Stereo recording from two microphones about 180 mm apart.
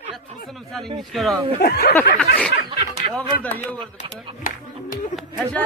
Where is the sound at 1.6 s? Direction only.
65° left (ahead or behind).